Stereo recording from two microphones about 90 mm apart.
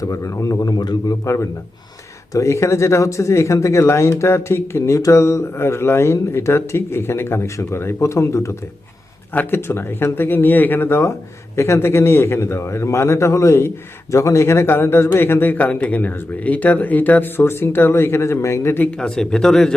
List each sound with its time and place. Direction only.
0.0 s speech: 35° left (ahead or behind)
2.3 s speech: 35° left (ahead or behind)
9.3 s a man's voice: 25° left (ahead or behind)
18.9 s speech: 10° left (ahead or behind)